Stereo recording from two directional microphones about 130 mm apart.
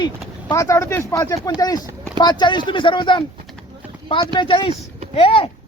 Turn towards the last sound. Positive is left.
turn(degrees=45)  # may be behind; listen again after turning